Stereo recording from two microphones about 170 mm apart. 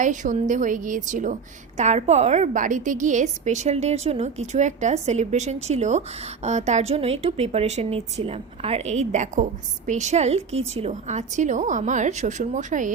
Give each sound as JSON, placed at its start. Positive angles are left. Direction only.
{"t": 0.0, "sound": "a woman's voice", "side_deg": -45}